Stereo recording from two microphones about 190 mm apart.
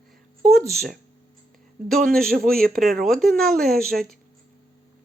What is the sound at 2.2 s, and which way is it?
Speech, 50° right (ahead or behind).